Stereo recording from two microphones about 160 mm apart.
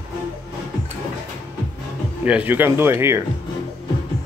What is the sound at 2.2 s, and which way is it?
Speech, 10° right (ahead or behind).